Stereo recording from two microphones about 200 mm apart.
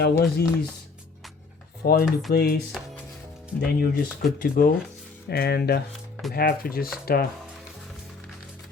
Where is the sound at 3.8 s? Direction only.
45° left (ahead or behind).